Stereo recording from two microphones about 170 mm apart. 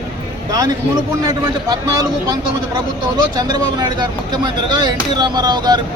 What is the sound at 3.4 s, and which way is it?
Speech, 25° right (ahead or behind).